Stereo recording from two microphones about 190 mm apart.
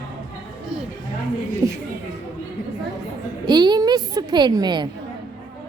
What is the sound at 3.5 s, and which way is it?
A woman's voice, 20° right (ahead or behind).